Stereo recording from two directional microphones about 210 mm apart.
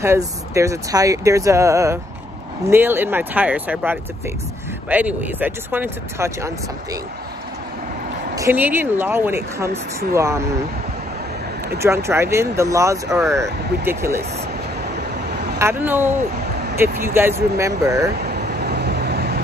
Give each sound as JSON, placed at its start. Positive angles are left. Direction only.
{"t": 0.0, "sound": "speech", "side_deg": -15}
{"t": 8.4, "sound": "speech", "side_deg": -10}
{"t": 11.8, "sound": "speech", "side_deg": -15}
{"t": 15.6, "sound": "speech", "side_deg": -10}
{"t": 18.3, "sound": "vehicle", "side_deg": -50}